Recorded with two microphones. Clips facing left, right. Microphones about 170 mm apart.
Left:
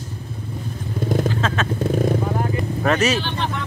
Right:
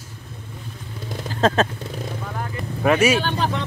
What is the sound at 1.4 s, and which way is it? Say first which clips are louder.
Vehicle: right 5 dB; 35° right (ahead or behind).